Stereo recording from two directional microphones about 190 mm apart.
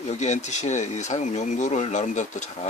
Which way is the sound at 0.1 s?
35° left (ahead or behind).